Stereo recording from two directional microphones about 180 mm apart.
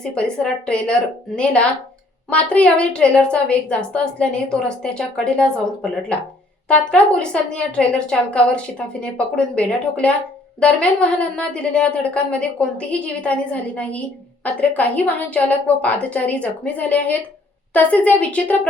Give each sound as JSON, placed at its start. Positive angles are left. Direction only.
{"t": 0.0, "sound": "a woman's voice", "side_deg": 5}
{"t": 2.3, "sound": "a woman's voice", "side_deg": 5}